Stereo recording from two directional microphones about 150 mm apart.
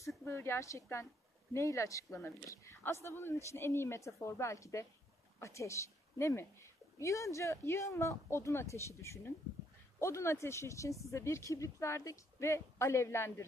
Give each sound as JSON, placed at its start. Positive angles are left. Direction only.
{"t": 0.2, "sound": "a woman's voice", "side_deg": 15}